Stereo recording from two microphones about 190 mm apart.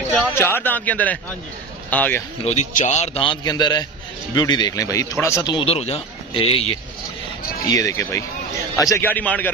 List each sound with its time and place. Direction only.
0.3 s a man's voice: 10° left (ahead or behind)
2.4 s a man's voice: 40° left (ahead or behind)
7.6 s a man's voice: 15° left (ahead or behind)